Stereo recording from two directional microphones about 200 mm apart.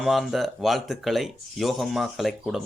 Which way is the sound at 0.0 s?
Centre (ahead or behind).